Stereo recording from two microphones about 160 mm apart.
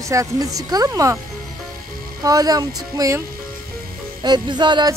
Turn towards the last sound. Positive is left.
turn(degrees=-25)  # may be behind; listen again after turning